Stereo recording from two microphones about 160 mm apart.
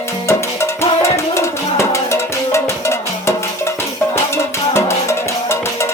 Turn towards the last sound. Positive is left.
turn(degrees=15)  # may be behind; listen again after turning